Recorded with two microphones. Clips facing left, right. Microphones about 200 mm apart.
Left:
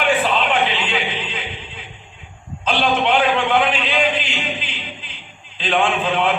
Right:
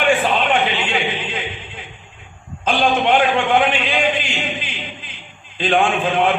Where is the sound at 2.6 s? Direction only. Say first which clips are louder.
Right 2 dB; 45° right (ahead or behind).